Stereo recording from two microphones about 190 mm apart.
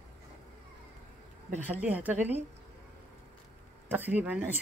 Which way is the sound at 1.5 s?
10° right (ahead or behind).